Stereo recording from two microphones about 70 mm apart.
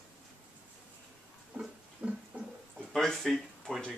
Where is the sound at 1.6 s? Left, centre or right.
Centre.